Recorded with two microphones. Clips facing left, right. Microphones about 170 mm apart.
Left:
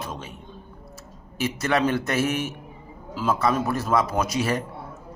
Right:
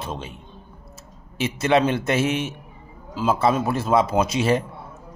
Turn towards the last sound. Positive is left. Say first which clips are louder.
# right 4 dB
turn(degrees=-25)  # may be behind; listen again after turning